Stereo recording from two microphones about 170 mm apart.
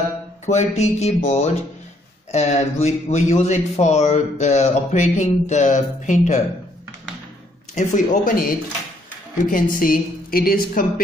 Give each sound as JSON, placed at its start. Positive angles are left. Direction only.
{"t": 0.5, "sound": "a man's voice", "side_deg": 40}
{"t": 7.7, "sound": "a man's voice", "side_deg": 45}